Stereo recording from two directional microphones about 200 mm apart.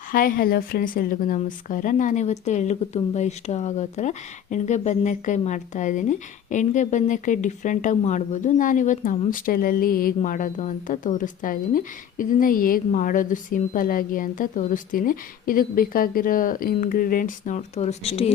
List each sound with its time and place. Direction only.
0.1 s a woman's voice: 45° left (ahead or behind)